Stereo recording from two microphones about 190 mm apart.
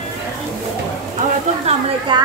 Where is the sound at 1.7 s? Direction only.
35° right (ahead or behind).